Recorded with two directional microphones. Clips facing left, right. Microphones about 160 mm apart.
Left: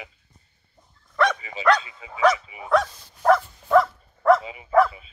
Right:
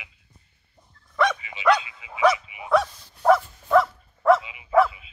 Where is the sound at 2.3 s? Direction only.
35° left (ahead or behind).